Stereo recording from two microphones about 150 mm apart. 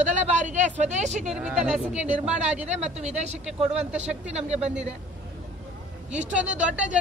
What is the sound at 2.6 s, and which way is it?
Speech, 50° right (ahead or behind).